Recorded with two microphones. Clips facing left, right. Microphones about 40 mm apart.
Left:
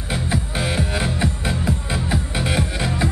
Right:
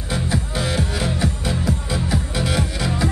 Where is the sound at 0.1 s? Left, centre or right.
Left.